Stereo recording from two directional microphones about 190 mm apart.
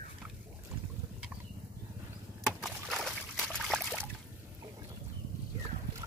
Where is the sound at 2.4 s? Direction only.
Centre (ahead or behind).